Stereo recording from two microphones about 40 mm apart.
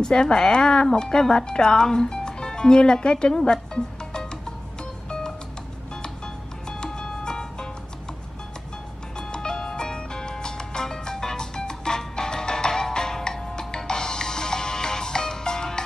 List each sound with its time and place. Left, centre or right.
0.0 s speech: centre
6.8 s music: centre
9.3 s music: centre